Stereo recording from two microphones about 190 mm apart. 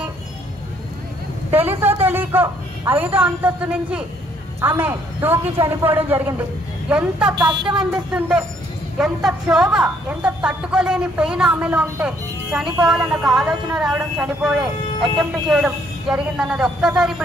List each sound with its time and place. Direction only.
1.5 s a man's voice: 10° right (ahead or behind)
7.3 s speech: 25° right (ahead or behind)
7.9 s a woman's voice: 5° right (ahead or behind)